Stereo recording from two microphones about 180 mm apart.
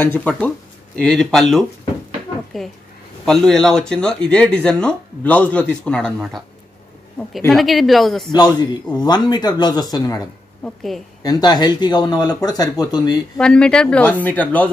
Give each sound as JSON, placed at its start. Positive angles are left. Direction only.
{"t": 0.0, "sound": "speech", "side_deg": 10}
{"t": 8.3, "sound": "speech", "side_deg": 25}
{"t": 10.6, "sound": "speech", "side_deg": 0}
{"t": 11.2, "sound": "speech", "side_deg": 20}
{"t": 13.4, "sound": "speech", "side_deg": 5}